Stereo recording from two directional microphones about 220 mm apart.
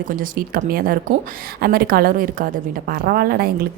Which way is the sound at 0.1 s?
40° right (ahead or behind).